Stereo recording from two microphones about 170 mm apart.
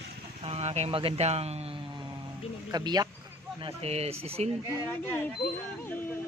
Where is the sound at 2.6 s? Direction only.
25° right (ahead or behind).